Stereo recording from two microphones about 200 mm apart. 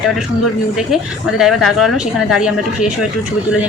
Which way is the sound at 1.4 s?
Centre (ahead or behind).